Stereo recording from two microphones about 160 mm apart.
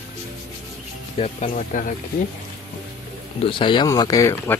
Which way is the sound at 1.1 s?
40° left (ahead or behind).